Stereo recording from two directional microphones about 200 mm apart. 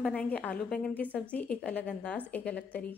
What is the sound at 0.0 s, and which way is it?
A woman's voice, 5° left (ahead or behind).